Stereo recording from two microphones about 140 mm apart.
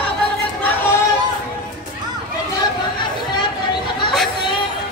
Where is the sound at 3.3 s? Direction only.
35° left (ahead or behind).